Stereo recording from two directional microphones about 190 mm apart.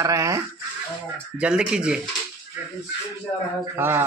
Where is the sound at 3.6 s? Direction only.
10° right (ahead or behind).